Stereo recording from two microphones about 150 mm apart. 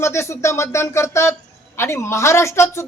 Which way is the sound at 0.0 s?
20° left (ahead or behind).